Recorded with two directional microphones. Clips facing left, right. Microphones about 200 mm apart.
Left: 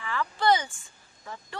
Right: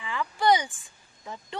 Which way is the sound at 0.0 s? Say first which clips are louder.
Right 1 dB; 15° right (ahead or behind).